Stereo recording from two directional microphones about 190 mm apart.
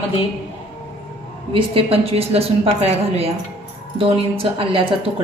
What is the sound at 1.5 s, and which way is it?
A woman's voice, 30° right (ahead or behind).